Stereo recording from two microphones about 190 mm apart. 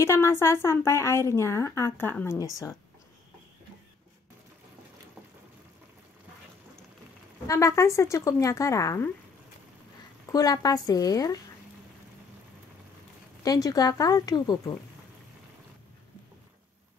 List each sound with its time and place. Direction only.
0.0 s a woman's voice: 15° left (ahead or behind)
7.4 s a woman's voice: 15° left (ahead or behind)
10.3 s a woman's voice: 20° left (ahead or behind)
13.4 s a woman's voice: 20° left (ahead or behind)